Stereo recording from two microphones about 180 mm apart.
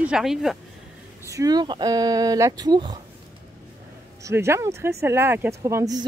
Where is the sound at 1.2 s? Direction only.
20° right (ahead or behind).